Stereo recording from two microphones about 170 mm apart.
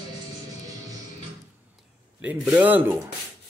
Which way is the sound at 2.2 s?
10° right (ahead or behind).